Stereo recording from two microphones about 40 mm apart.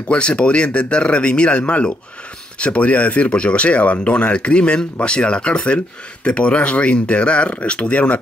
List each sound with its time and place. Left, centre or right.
0.1 s speech: left